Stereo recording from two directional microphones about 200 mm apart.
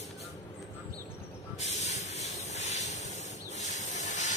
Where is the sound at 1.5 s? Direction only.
35° left (ahead or behind).